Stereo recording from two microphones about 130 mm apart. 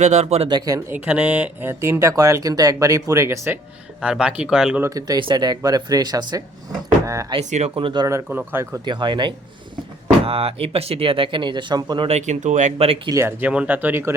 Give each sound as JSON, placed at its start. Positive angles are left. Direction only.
{"t": 0.0, "sound": "speech", "side_deg": -60}
{"t": 0.4, "sound": "speech", "side_deg": -30}
{"t": 0.9, "sound": "speech", "side_deg": -10}
{"t": 1.8, "sound": "speech", "side_deg": -20}
{"t": 4.0, "sound": "speech", "side_deg": -5}
{"t": 4.8, "sound": "speech", "side_deg": -25}
{"t": 7.8, "sound": "speech", "side_deg": -40}
{"t": 8.0, "sound": "speech", "side_deg": -20}
{"t": 8.8, "sound": "speech", "side_deg": -35}
{"t": 10.2, "sound": "speech", "side_deg": -45}
{"t": 12.0, "sound": "speech", "side_deg": -60}
{"t": 13.1, "sound": "speech", "side_deg": -20}